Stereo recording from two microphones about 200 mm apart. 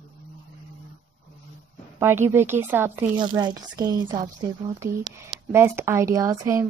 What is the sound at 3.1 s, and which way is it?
A woman's voice, 20° right (ahead or behind).